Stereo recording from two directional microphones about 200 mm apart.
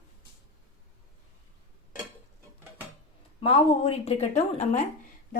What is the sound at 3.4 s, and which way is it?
A woman's voice, 30° left (ahead or behind).